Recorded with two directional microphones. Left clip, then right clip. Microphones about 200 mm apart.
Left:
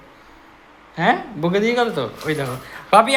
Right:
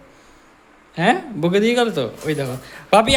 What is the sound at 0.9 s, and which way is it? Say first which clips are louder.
Speech: even; 35° right (ahead or behind).